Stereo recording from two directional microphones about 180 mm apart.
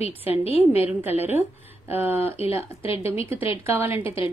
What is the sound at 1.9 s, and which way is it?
Speech, 10° right (ahead or behind).